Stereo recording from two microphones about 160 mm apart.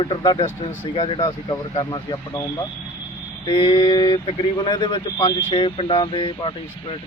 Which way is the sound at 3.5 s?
30° left (ahead or behind).